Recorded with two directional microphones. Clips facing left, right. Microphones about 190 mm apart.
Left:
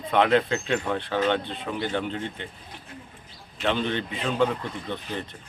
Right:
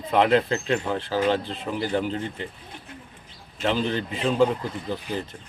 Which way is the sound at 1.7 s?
15° right (ahead or behind).